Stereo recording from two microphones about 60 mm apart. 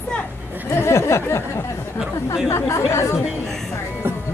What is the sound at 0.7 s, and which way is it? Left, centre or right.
A woman's voice, left.